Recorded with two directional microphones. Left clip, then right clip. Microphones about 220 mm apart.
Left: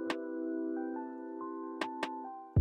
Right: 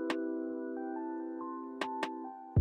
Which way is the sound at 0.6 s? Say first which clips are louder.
Left 2 dB; 35° left (ahead or behind).